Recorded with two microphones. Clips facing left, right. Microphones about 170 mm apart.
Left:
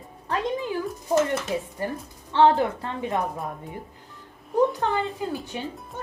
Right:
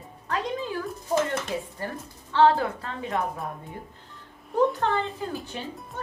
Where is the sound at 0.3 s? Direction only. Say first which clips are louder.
Left 3 dB; 15° left (ahead or behind).